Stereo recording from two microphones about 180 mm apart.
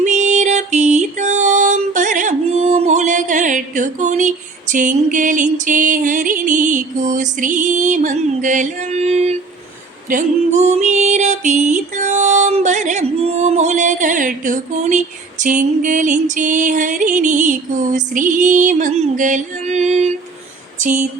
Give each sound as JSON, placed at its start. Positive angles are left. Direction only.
{"t": 0.0, "sound": "music", "side_deg": -40}
{"t": 20.7, "sound": "speech", "side_deg": -45}